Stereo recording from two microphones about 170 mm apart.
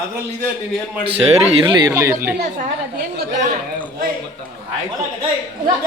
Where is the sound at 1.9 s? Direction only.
15° right (ahead or behind).